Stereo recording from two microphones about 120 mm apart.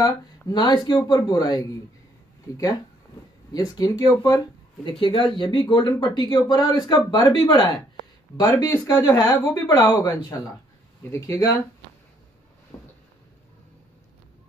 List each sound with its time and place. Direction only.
0.5 s speech: 35° left (ahead or behind)
4.8 s speech: 45° left (ahead or behind); by 9.8 s 25° left (ahead or behind)
11.1 s speech: 25° left (ahead or behind)